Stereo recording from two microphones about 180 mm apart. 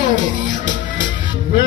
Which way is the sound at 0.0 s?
45° left (ahead or behind).